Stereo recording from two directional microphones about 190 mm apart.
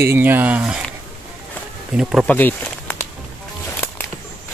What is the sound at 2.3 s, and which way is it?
Speech, 10° left (ahead or behind).